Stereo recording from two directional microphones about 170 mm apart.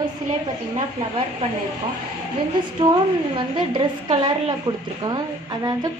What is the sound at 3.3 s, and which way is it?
A woman's voice, 30° right (ahead or behind).